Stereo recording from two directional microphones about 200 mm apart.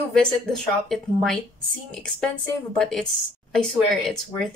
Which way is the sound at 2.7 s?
5° left (ahead or behind).